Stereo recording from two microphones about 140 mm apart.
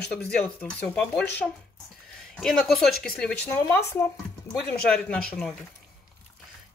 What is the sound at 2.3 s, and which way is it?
A woman's voice, centre (ahead or behind).